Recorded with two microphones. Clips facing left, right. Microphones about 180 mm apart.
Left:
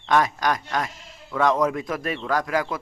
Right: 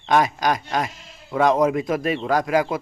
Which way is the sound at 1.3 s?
15° right (ahead or behind).